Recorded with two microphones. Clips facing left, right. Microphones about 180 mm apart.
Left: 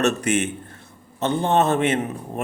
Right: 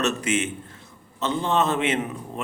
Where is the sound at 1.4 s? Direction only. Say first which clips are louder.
Left 4 dB; 50° left (ahead or behind).